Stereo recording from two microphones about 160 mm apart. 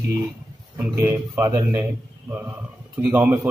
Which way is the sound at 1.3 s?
20° right (ahead or behind).